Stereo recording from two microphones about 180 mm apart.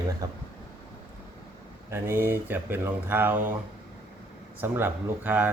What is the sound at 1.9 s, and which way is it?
Speech, 15° right (ahead or behind).